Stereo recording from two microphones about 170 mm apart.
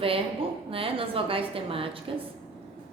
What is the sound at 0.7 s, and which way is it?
A woman's voice, 35° right (ahead or behind).